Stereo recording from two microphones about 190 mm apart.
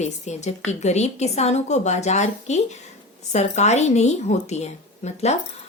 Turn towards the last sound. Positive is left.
turn(degrees=35)  # may be behind; listen again after turning